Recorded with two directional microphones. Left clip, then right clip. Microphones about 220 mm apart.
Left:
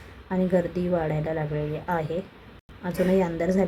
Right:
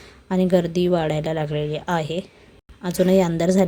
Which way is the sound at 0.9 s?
40° right (ahead or behind).